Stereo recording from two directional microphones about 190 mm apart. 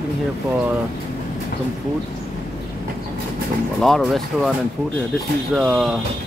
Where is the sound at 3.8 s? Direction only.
Centre (ahead or behind).